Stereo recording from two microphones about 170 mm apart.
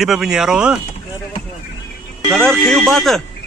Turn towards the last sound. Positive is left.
turn(degrees=0)  # may be behind; listen again after turning